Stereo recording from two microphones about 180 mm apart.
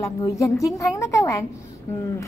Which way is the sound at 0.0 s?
15° left (ahead or behind).